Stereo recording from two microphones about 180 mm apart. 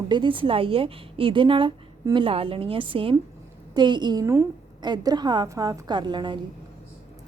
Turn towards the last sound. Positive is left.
turn(degrees=-25)  # may be behind; listen again after turning